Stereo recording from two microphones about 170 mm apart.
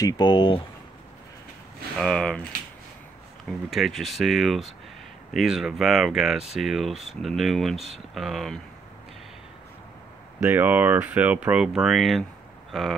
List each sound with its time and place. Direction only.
0.0 s speech: 25° left (ahead or behind)
2.0 s speech: 5° left (ahead or behind)
3.4 s speech: centre (ahead or behind)
10.4 s speech: 10° right (ahead or behind)